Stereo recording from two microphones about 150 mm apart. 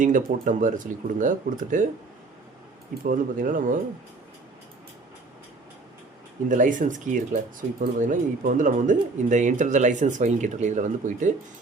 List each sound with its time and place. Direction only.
0.0 s speech: 60° right (ahead or behind)
3.0 s speech: 65° right (ahead or behind)
6.5 s speech: 60° right (ahead or behind)